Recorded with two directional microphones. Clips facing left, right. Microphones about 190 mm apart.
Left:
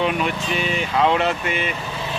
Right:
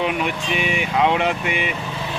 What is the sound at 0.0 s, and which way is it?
Speech, 15° right (ahead or behind).